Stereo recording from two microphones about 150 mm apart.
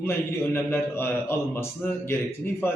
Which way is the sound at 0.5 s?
15° left (ahead or behind).